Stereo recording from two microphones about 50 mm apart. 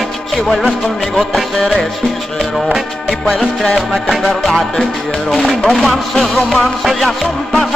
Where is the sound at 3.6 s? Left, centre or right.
Centre.